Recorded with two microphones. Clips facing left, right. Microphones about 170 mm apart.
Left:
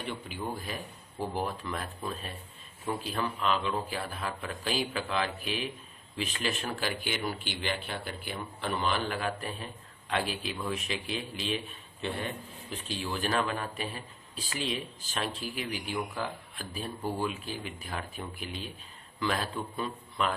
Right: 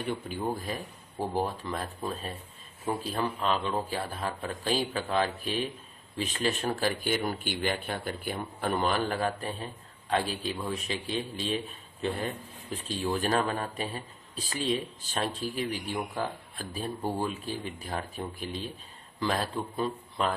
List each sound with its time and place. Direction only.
0.1 s speech: 40° right (ahead or behind)
13.0 s speech: 35° right (ahead or behind)